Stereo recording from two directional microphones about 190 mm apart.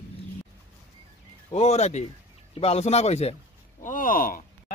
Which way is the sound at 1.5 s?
35° left (ahead or behind).